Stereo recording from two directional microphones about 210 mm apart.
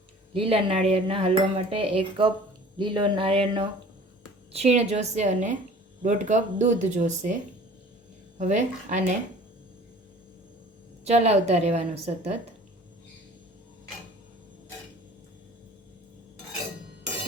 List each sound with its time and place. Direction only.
0.3 s cutlery: 30° right (ahead or behind)
4.5 s speech: 30° right (ahead or behind)
8.4 s speech: 35° right (ahead or behind)
11.0 s speech: 30° right (ahead or behind)